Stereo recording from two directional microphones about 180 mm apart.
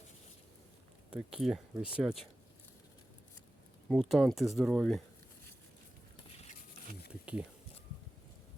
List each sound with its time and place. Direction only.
1.1 s speech: 5° right (ahead or behind)
3.8 s speech: centre (ahead or behind)
6.3 s patter: 35° left (ahead or behind)
7.1 s a sound: 5° right (ahead or behind)